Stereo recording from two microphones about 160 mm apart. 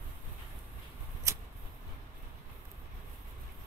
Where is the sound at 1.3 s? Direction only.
20° right (ahead or behind).